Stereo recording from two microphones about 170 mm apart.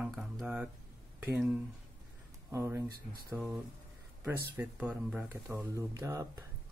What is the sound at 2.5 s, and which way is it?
Speech, 15° right (ahead or behind).